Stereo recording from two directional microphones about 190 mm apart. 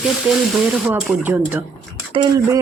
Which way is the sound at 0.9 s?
10° right (ahead or behind).